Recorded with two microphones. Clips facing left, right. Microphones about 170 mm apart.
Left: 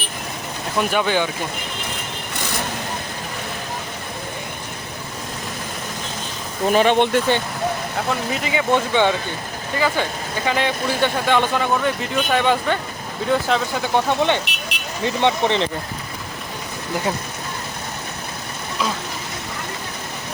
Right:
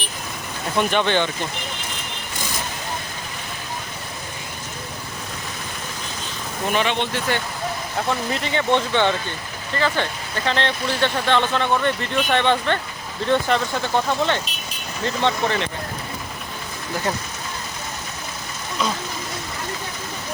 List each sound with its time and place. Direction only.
0.8 s speech: 5° left (ahead or behind)
6.7 s speech: 50° left (ahead or behind)
8.3 s speech: 5° left (ahead or behind)
13.9 s speech: 15° left (ahead or behind)
14.4 s vehicle: 70° left (ahead or behind)
15.0 s speech: 20° left (ahead or behind)